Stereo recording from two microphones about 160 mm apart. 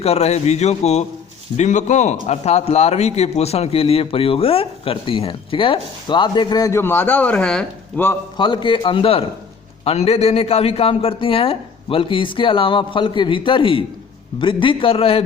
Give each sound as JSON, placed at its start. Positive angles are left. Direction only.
{"t": 0.0, "sound": "a man's voice", "side_deg": 40}
{"t": 8.4, "sound": "a man's voice", "side_deg": 30}